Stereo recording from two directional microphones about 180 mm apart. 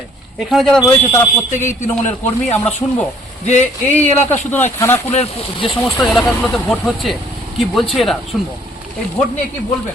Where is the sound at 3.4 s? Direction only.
40° left (ahead or behind).